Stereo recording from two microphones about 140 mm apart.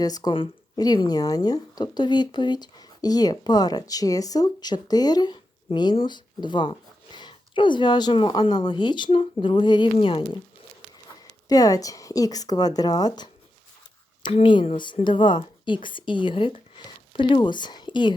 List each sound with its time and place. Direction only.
0.0 s speech: 25° left (ahead or behind)
11.4 s speech: 25° left (ahead or behind)
14.3 s speech: 40° left (ahead or behind)